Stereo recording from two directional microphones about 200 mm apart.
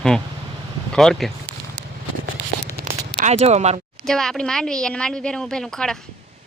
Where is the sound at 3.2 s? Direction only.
35° right (ahead or behind).